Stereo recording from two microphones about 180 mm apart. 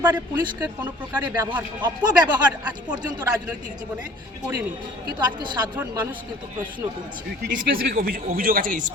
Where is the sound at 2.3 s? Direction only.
5° right (ahead or behind).